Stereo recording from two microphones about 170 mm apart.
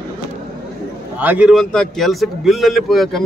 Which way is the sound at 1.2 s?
10° right (ahead or behind).